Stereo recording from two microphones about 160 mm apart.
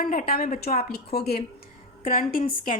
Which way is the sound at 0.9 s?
80° left.